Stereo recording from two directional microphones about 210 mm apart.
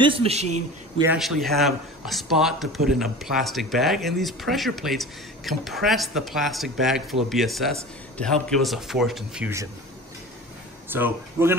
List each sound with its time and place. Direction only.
0.0 s a man's voice: 25° right (ahead or behind)
1.1 s speech: centre (ahead or behind)
10.9 s speech: 10° right (ahead or behind)